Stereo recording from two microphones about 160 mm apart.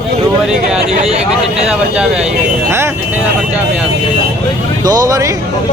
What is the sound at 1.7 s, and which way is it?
Speech, 5° right (ahead or behind).